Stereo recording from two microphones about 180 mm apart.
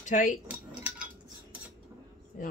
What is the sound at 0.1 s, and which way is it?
Speech, 45° left (ahead or behind).